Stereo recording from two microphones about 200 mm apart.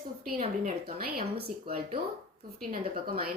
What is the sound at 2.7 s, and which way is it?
Speech, 50° right (ahead or behind).